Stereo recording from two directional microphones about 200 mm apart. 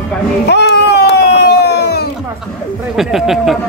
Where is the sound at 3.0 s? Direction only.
Centre (ahead or behind).